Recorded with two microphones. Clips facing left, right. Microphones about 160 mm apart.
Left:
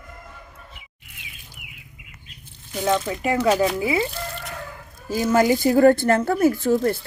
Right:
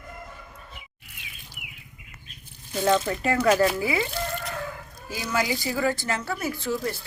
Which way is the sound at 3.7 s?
25° left (ahead or behind).